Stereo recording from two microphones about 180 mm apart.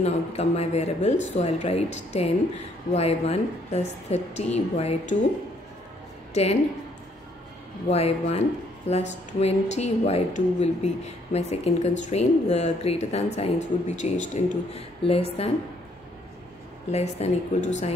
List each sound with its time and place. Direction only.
0.0 s speech: 35° left (ahead or behind)
6.3 s speech: 35° left (ahead or behind)
7.9 s speech: 35° left (ahead or behind)
16.9 s speech: 35° left (ahead or behind)